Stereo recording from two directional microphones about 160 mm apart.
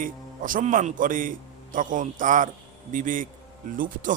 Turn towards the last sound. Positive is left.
turn(degrees=-60)  # may be behind; listen again after turning